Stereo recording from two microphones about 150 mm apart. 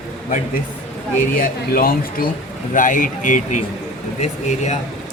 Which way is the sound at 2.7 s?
60° left (ahead or behind).